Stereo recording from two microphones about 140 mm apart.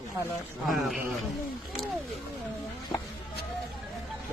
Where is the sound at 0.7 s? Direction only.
Centre (ahead or behind).